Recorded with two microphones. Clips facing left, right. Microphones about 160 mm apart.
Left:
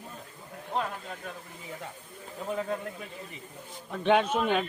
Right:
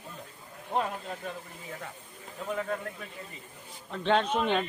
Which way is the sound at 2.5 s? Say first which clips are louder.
Left 1 dB; 20° left (ahead or behind).